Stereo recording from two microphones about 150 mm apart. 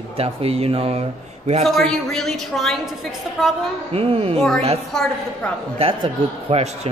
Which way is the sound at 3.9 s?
40° right (ahead or behind).